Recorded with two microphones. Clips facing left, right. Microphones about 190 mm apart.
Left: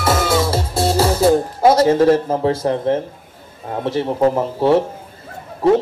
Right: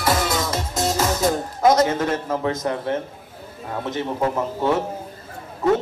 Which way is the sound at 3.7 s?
30° left (ahead or behind).